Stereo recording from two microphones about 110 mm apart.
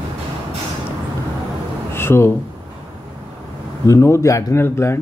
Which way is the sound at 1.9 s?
20° left (ahead or behind).